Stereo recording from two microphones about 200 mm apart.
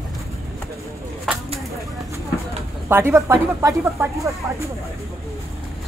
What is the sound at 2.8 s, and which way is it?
Speech, 10° right (ahead or behind).